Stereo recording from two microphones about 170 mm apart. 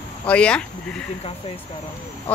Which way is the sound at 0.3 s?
5° left (ahead or behind).